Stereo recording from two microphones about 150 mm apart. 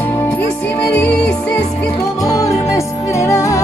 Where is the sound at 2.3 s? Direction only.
20° left (ahead or behind).